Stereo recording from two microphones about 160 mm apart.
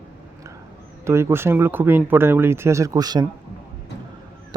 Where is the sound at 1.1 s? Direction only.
15° right (ahead or behind).